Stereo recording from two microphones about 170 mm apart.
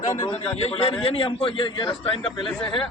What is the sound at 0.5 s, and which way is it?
A man's voice, 35° left (ahead or behind).